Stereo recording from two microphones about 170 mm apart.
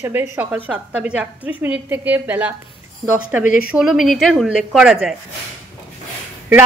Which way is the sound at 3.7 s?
Centre (ahead or behind).